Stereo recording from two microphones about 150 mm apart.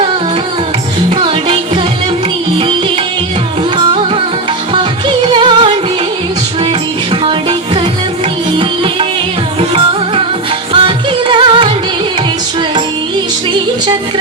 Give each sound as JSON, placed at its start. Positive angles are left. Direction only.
{"t": 1.1, "sound": "music", "side_deg": -35}
{"t": 3.8, "sound": "music", "side_deg": -35}
{"t": 8.5, "sound": "music", "side_deg": -35}
{"t": 10.7, "sound": "music", "side_deg": -35}